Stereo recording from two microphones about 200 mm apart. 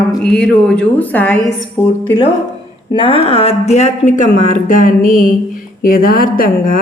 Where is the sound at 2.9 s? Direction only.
25° left (ahead or behind).